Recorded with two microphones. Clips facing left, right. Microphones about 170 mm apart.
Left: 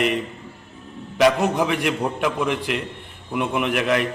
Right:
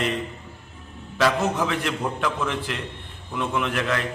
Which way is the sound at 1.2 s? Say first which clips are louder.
Left 4 dB; 15° left (ahead or behind).